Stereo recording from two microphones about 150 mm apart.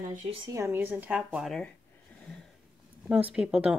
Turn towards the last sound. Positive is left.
turn(degrees=-5)  # may be behind; listen again after turning